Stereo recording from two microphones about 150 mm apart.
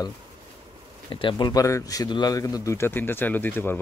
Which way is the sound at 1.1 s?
30° left (ahead or behind).